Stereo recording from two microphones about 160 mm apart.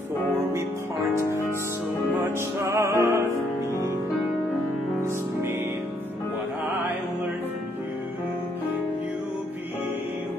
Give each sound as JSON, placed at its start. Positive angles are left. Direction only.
{"t": 1.2, "sound": "music", "side_deg": 20}
{"t": 2.1, "sound": "music", "side_deg": -15}